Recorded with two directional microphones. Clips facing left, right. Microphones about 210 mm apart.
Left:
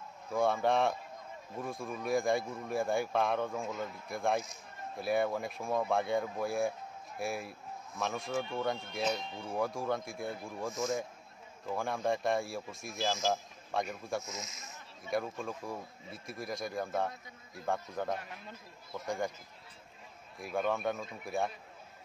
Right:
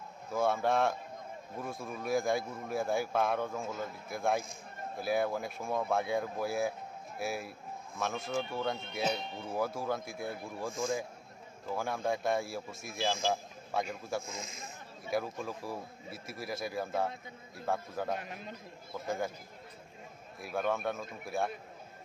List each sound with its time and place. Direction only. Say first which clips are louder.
0.3 s speech: left 1 dB; centre (ahead or behind)
14.2 s speech: right 1 dB; 30° right (ahead or behind)
15.0 s speech: even; 5° right (ahead or behind)
20.3 s speech: even; centre (ahead or behind)